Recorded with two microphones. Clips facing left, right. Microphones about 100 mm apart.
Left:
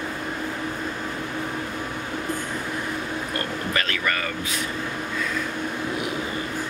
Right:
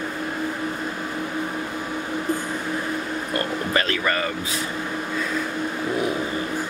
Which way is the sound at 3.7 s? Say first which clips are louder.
Right 4 dB; 30° right (ahead or behind).